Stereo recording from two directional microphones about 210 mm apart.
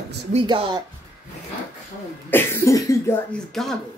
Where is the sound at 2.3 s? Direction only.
10° left (ahead or behind).